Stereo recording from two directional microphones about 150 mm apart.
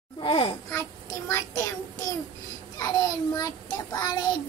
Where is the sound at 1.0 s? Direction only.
20° left (ahead or behind).